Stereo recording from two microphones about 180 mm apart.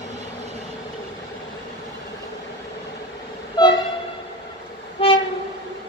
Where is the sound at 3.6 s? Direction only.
25° left (ahead or behind).